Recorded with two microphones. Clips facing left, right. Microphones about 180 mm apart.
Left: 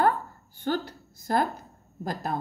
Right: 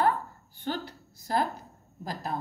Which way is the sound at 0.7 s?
50° left (ahead or behind).